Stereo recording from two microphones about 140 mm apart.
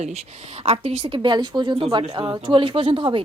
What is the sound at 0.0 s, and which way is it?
A woman's voice, 55° right (ahead or behind).